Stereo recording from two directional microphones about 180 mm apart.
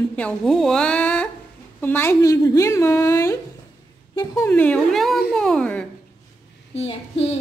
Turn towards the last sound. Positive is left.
turn(degrees=35)  # may be behind; listen again after turning